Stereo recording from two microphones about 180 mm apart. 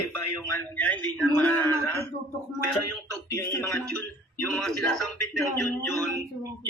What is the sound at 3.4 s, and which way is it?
Speech, 15° left (ahead or behind).